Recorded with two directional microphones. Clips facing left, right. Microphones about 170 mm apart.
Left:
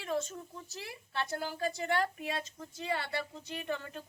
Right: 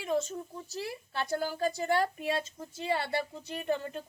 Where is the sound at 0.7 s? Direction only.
40° right (ahead or behind).